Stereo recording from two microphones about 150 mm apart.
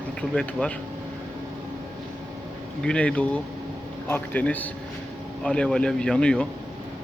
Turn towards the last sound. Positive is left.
turn(degrees=5)  # may be behind; listen again after turning